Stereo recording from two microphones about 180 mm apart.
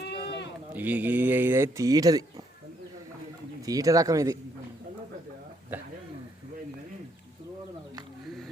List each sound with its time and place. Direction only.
0.0 s sheep: 65° left (ahead or behind)
0.7 s speech: 10° right (ahead or behind)
3.7 s speech: 20° right (ahead or behind)